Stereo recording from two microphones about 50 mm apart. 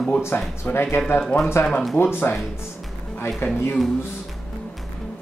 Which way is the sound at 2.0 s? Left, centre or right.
Left.